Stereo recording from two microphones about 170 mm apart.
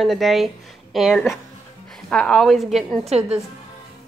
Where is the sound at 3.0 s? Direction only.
35° right (ahead or behind).